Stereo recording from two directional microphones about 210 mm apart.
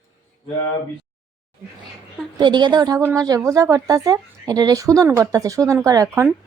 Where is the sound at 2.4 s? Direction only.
20° right (ahead or behind).